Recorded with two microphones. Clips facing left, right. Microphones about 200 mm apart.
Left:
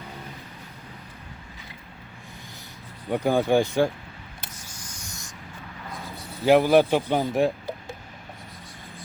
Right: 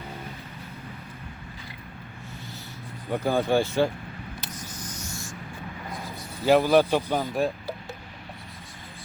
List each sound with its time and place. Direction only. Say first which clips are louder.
3.1 s speech: left 2 dB; 15° left (ahead or behind)
4.5 s writing: right 6 dB; 10° left (ahead or behind)
6.4 s speech: left 2 dB; 15° left (ahead or behind)